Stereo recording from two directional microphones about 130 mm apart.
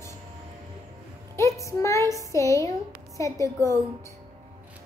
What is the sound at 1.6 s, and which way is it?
A child's voice, 25° left (ahead or behind).